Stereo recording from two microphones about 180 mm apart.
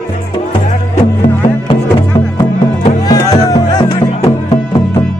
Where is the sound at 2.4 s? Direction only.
25° left (ahead or behind).